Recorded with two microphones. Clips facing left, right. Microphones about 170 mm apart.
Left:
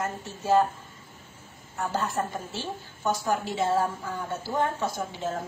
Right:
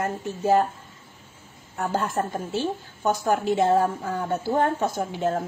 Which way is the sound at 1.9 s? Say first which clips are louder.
Right 3 dB; 50° right (ahead or behind).